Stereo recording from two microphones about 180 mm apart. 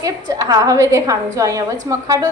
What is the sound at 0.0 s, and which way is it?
A woman's voice, 20° right (ahead or behind).